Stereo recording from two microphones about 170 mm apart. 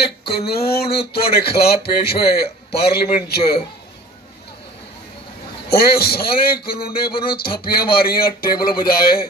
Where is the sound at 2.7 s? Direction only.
70° left (ahead or behind).